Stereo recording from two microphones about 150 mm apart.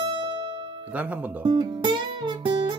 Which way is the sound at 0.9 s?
10° right (ahead or behind).